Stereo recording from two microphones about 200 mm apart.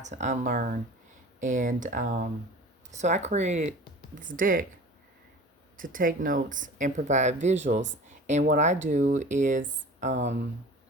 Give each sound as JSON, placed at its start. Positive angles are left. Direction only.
{"t": 0.0, "sound": "speech", "side_deg": -35}
{"t": 5.7, "sound": "speech", "side_deg": -45}